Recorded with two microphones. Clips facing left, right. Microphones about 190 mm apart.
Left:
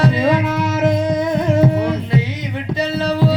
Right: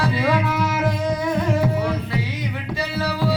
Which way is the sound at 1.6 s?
20° left (ahead or behind).